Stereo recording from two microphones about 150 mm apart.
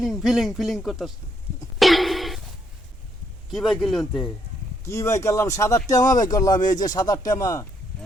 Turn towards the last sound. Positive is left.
turn(degrees=20)  # may be behind; listen again after turning